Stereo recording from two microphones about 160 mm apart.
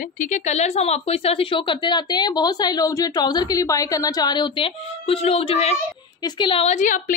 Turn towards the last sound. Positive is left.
turn(degrees=50)  # may be behind; listen again after turning